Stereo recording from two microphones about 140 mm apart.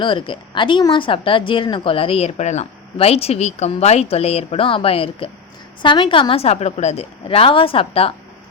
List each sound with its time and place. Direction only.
0.0 s speech: 35° left (ahead or behind)